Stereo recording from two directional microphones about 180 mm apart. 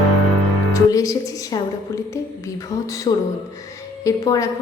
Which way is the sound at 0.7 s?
20° left (ahead or behind).